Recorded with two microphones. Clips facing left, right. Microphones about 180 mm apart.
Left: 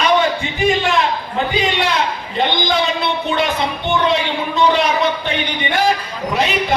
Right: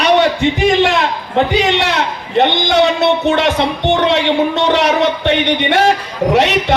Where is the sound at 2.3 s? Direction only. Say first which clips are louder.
Right 6 dB; 75° right (ahead or behind).